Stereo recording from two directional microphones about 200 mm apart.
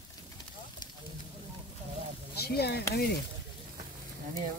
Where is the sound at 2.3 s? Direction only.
50° left (ahead or behind).